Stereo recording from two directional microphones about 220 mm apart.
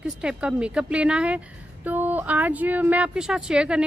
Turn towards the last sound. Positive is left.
turn(degrees=-5)  # may be behind; listen again after turning